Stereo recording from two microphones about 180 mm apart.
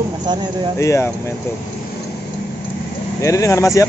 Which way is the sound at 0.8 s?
15° left (ahead or behind).